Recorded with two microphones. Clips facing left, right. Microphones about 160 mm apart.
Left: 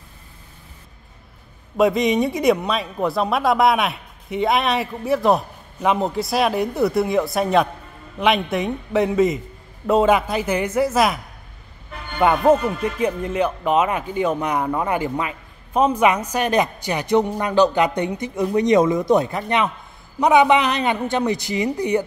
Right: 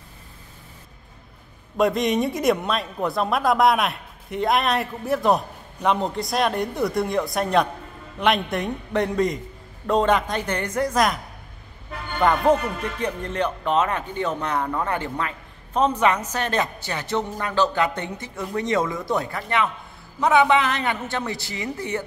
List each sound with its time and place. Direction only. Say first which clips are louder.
1.8 s a man's voice: left 3 dB; centre (ahead or behind)
12.2 s speech: left 3 dB; 10° left (ahead or behind)